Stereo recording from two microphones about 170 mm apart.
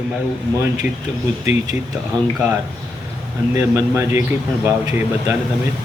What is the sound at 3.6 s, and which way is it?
Speech, 15° right (ahead or behind).